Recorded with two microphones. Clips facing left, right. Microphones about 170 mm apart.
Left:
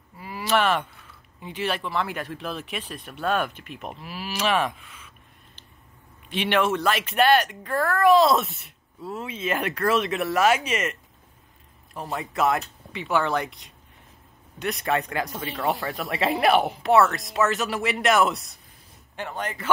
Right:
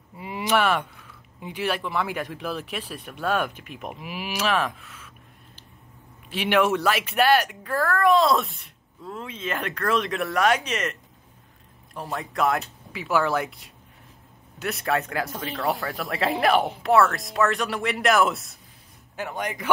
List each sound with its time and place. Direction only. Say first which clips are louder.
0.2 s a sound: even; 20° right (ahead or behind)
1.4 s speech: right 1 dB; 10° right (ahead or behind)
4.5 s speech: left 2 dB; centre (ahead or behind)
6.3 s speech: right 1 dB; 10° right (ahead or behind)